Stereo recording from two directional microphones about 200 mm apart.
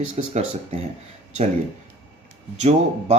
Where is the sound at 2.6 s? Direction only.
35° right (ahead or behind).